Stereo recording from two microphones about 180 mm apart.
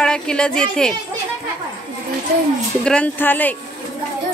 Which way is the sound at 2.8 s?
5° left (ahead or behind).